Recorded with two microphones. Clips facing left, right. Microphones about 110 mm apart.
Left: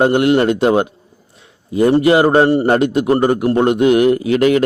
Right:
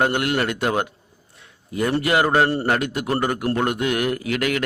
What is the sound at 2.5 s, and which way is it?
A man's voice, 15° left (ahead or behind).